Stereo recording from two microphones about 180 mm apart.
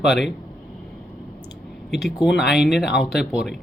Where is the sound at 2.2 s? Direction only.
Centre (ahead or behind).